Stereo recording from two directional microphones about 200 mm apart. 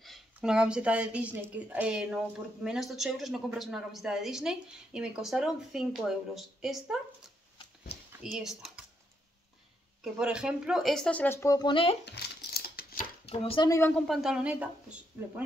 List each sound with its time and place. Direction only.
0.0 s a woman's voice: centre (ahead or behind)
8.2 s speech: centre (ahead or behind)
10.1 s a woman's voice: 5° right (ahead or behind); by 12.0 s 25° left (ahead or behind)
12.0 s crumpling: 55° left (ahead or behind)
13.3 s speech: 25° left (ahead or behind)
13.7 s a woman's voice: 10° left (ahead or behind); by 15.4 s 5° right (ahead or behind)